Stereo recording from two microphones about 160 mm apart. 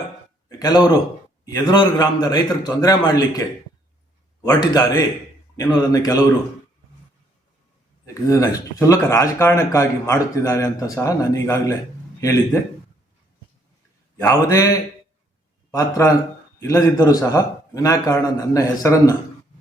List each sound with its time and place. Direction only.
0.4 s a sound: 25° left (ahead or behind)
1.5 s speech: 25° left (ahead or behind)
4.4 s speech: 25° left (ahead or behind)
8.0 s speech: 20° left (ahead or behind)
14.2 s speech: 20° left (ahead or behind)